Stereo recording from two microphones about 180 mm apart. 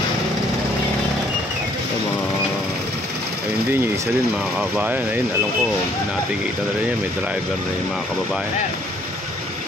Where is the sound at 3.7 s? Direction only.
10° right (ahead or behind).